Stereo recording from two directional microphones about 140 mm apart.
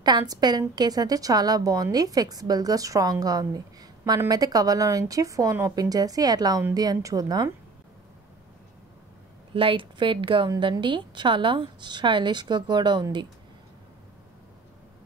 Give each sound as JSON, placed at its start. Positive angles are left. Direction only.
{"t": 0.0, "sound": "a woman's voice", "side_deg": -30}
{"t": 9.5, "sound": "a woman's voice", "side_deg": -40}